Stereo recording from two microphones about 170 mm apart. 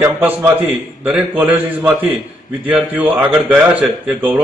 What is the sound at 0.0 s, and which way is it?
A man's voice, 10° right (ahead or behind).